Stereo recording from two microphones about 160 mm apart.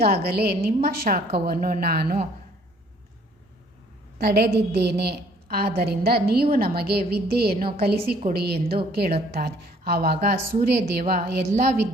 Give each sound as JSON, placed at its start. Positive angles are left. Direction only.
{"t": 0.0, "sound": "a woman's voice", "side_deg": -80}
{"t": 4.2, "sound": "a woman's voice", "side_deg": -85}
{"t": 11.0, "sound": "a woman's voice", "side_deg": -50}